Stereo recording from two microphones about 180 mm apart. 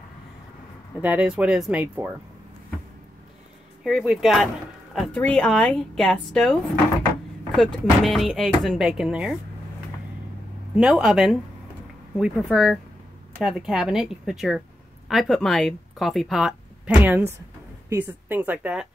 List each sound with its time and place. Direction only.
1.0 s speech: 5° right (ahead or behind)
3.8 s speech: 5° right (ahead or behind)
10.8 s speech: 5° right (ahead or behind)